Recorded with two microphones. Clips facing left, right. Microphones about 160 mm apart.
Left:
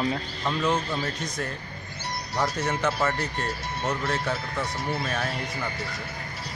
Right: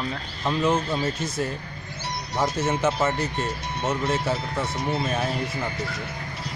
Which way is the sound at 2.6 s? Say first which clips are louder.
Right 4 dB; 25° right (ahead or behind).